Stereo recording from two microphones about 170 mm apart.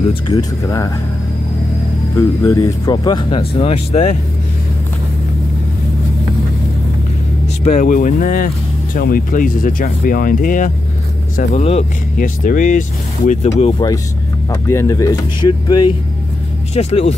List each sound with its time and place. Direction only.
0.1 s speech: 25° left (ahead or behind)
2.1 s speech: 20° left (ahead or behind); by 4.2 s 40° left (ahead or behind)
7.6 s speech: 45° left (ahead or behind)
12.2 s speech: 50° left (ahead or behind); by 13.9 s 30° left (ahead or behind)
14.5 s speech: 20° left (ahead or behind)
16.7 s speech: 35° left (ahead or behind)